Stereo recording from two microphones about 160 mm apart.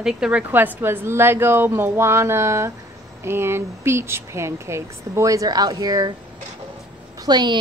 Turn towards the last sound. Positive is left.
turn(degrees=-25)  # may be behind; listen again after turning